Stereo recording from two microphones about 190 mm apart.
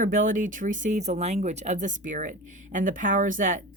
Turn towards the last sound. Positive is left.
turn(degrees=-45)  # may be behind; listen again after turning